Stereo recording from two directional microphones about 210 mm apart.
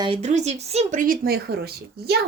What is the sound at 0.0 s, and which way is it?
Speech, 30° right (ahead or behind).